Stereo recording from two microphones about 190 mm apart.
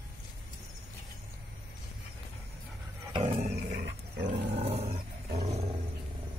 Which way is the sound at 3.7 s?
65° right (ahead or behind).